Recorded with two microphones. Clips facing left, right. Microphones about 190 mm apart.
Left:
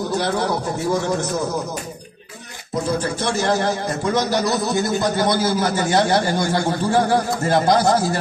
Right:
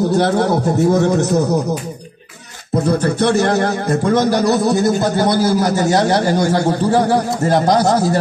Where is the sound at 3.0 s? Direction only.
60° right (ahead or behind).